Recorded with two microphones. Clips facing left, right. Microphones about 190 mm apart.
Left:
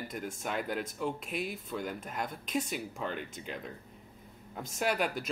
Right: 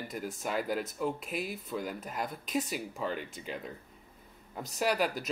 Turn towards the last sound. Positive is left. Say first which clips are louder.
# right 1 dB
turn(degrees=0)  # may be behind; listen again after turning